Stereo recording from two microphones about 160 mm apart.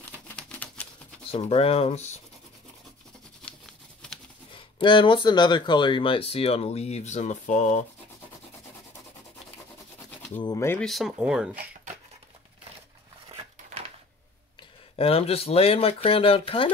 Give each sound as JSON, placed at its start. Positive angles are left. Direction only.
{"t": 0.4, "sound": "typewriter", "side_deg": 5}
{"t": 1.3, "sound": "speech", "side_deg": 35}
{"t": 4.5, "sound": "speech", "side_deg": 30}
{"t": 10.4, "sound": "speech", "side_deg": 20}
{"t": 10.8, "sound": "speech", "side_deg": 0}
{"t": 15.0, "sound": "speech", "side_deg": 35}